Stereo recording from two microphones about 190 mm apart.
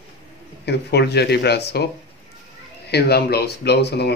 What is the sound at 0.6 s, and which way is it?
A man's voice, 60° left (ahead or behind).